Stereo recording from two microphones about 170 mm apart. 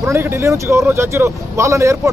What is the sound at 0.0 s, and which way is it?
Speech, 15° right (ahead or behind).